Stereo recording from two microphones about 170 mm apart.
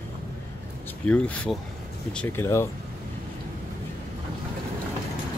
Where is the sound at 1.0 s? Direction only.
10° left (ahead or behind).